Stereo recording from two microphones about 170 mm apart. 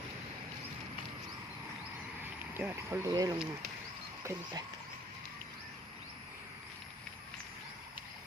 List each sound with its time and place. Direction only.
2.6 s speech: 15° right (ahead or behind)